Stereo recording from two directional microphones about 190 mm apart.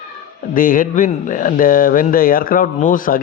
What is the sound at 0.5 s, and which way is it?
Speech, 45° left (ahead or behind).